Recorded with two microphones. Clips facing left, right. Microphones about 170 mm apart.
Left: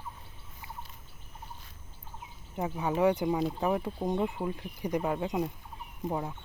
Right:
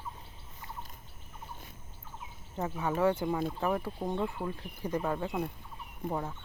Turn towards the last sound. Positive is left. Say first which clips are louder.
# left 1 dB
turn(degrees=10)  # may be behind; listen again after turning